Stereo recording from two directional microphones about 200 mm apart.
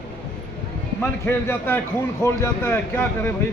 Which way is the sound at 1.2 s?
10° left (ahead or behind).